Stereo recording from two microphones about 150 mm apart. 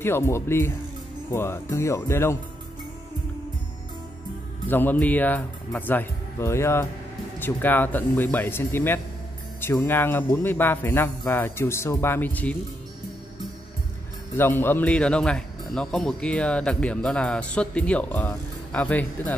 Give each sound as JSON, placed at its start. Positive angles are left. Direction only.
{"t": 0.0, "sound": "speech", "side_deg": 15}
{"t": 4.6, "sound": "speech", "side_deg": 10}
{"t": 14.3, "sound": "speech", "side_deg": 15}